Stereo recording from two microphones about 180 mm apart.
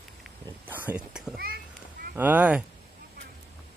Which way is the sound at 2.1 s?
10° right (ahead or behind).